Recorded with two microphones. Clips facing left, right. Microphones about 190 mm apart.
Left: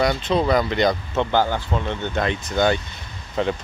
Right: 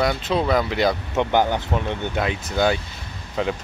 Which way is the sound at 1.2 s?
20° right (ahead or behind).